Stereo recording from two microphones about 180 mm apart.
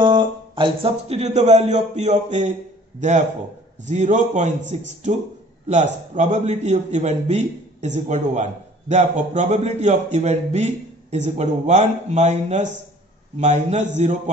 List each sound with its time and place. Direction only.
0.0 s a man's voice: 25° right (ahead or behind); by 4.6 s 45° right (ahead or behind)
5.7 s a man's voice: 40° right (ahead or behind)